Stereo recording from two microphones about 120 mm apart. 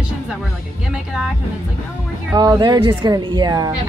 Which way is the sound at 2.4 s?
35° right (ahead or behind).